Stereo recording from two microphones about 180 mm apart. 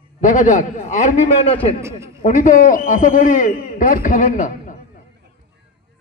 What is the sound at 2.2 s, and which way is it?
A man's voice, 45° left (ahead or behind).